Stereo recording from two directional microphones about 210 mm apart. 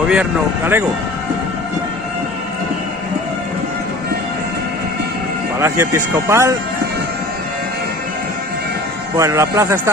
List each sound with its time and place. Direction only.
0.1 s a man's voice: 5° right (ahead or behind)
5.6 s a man's voice: 15° right (ahead or behind)
9.1 s a man's voice: 15° right (ahead or behind)